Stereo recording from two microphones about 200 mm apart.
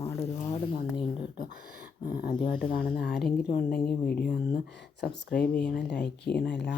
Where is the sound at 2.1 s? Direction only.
45° left (ahead or behind).